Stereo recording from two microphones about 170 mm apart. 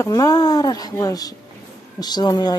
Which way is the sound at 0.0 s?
20° left (ahead or behind).